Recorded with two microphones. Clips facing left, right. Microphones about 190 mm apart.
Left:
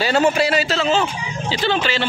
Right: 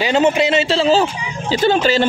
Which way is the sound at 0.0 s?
20° right (ahead or behind).